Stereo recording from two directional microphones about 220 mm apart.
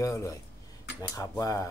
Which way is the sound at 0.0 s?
15° left (ahead or behind).